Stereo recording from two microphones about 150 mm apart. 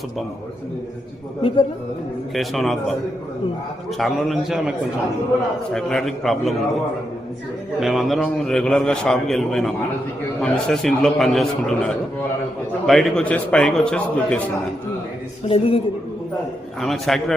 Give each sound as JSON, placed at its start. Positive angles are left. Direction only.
{"t": 1.4, "sound": "a man's voice", "side_deg": 35}
{"t": 2.3, "sound": "a man's voice", "side_deg": 0}
{"t": 3.9, "sound": "a man's voice", "side_deg": 0}
{"t": 5.7, "sound": "a man's voice", "side_deg": 5}
{"t": 7.8, "sound": "a man's voice", "side_deg": 0}
{"t": 15.4, "sound": "a man's voice", "side_deg": 40}
{"t": 16.8, "sound": "a man's voice", "side_deg": 0}